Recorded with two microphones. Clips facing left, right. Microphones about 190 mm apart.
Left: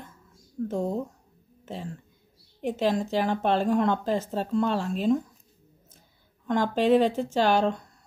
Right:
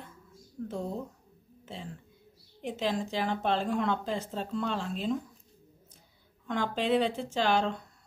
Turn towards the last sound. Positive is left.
turn(degrees=45)  # may be behind; listen again after turning